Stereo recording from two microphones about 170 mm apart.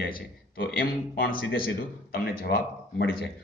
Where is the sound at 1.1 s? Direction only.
60° left (ahead or behind).